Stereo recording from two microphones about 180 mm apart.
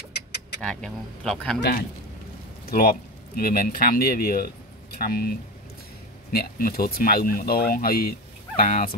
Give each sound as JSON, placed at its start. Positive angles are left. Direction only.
{"t": 0.1, "sound": "vehicle", "side_deg": 70}
{"t": 0.6, "sound": "speech", "side_deg": 5}
{"t": 1.6, "sound": "speech", "side_deg": 55}
{"t": 6.3, "sound": "speech", "side_deg": 55}